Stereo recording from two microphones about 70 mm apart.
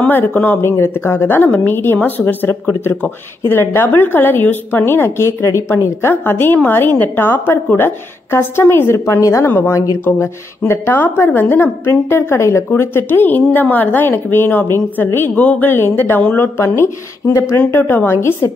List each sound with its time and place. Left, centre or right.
0.1 s speech: left
0.6 s a woman's voice: left
2.6 s speech: left
2.9 s a woman's voice: left
9.9 s a woman's voice: left